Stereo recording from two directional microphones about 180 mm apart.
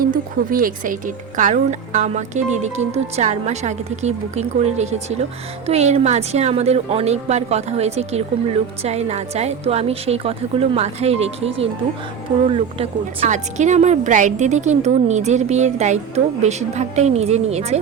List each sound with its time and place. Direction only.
0.0 s a woman's voice: 50° right (ahead or behind)